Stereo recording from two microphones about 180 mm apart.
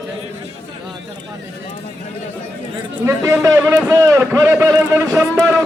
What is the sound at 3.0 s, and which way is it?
A man's voice, 15° right (ahead or behind).